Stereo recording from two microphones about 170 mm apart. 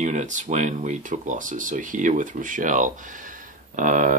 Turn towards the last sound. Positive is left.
turn(degrees=-50)  # may be behind; listen again after turning